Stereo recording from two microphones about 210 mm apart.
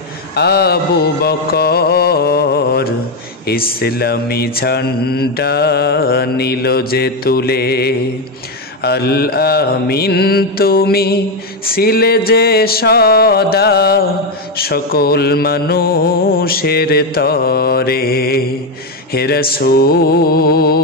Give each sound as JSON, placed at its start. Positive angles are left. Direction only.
{"t": 0.3, "sound": "music", "side_deg": 50}
{"t": 3.4, "sound": "mantra", "side_deg": 45}